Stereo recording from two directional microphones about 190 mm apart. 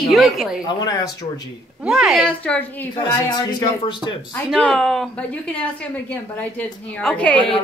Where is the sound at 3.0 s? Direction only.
20° left (ahead or behind).